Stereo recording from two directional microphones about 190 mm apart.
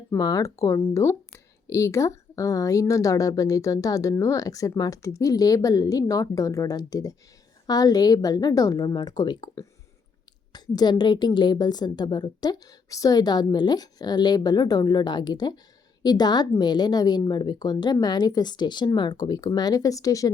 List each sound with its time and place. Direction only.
0.1 s a woman's voice: 20° left (ahead or behind)
10.8 s a woman's voice: 20° left (ahead or behind)